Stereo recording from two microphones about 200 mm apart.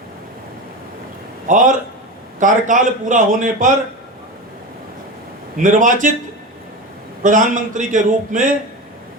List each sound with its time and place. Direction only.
1.5 s a man's voice: 40° right (ahead or behind)
5.5 s a man's voice: 40° right (ahead or behind)
7.2 s a man's voice: 40° right (ahead or behind)